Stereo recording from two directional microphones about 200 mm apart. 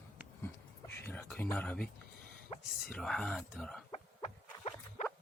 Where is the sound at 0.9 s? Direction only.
10° left (ahead or behind).